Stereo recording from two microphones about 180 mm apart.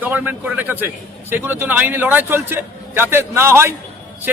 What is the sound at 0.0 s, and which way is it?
A man's voice, 10° right (ahead or behind).